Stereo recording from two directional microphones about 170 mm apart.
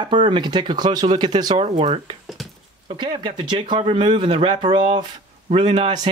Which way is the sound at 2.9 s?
30° right (ahead or behind).